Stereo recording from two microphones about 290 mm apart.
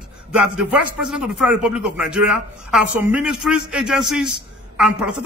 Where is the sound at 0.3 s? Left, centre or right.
Centre.